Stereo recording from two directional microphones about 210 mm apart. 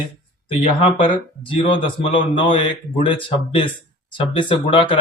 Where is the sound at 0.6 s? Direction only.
25° left (ahead or behind).